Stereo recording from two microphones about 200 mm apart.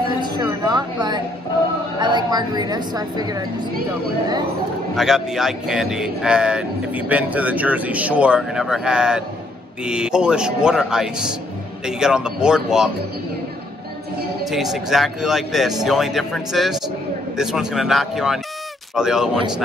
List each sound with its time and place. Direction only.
0.2 s a woman's voice: 20° right (ahead or behind)
4.9 s speech: centre (ahead or behind)
14.4 s speech: centre (ahead or behind)